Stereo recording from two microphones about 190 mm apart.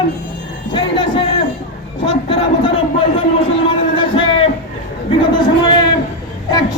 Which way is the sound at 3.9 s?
25° left (ahead or behind).